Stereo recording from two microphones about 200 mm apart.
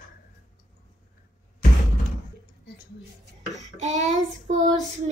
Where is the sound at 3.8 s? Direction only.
35° right (ahead or behind).